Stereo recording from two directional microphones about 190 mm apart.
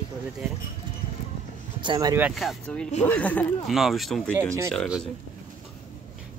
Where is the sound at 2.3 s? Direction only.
Centre (ahead or behind).